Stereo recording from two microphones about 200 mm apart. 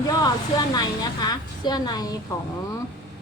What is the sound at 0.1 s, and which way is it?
A woman's voice, 20° left (ahead or behind).